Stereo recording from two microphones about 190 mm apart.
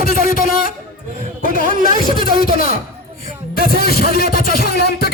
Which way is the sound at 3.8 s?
55° left (ahead or behind).